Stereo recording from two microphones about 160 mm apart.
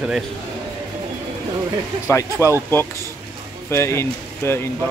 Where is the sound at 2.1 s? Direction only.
20° left (ahead or behind).